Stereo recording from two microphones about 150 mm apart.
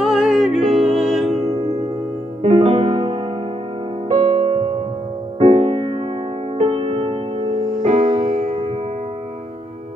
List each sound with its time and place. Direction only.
0.0 s music: centre (ahead or behind)
2.4 s music: 45° right (ahead or behind)
4.2 s music: 45° right (ahead or behind)